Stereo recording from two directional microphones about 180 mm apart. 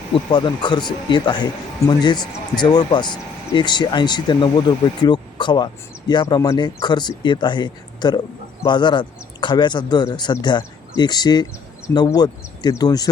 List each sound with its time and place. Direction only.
0.1 s speech: 25° left (ahead or behind)